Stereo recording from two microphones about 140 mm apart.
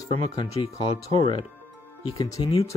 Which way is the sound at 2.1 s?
30° left (ahead or behind).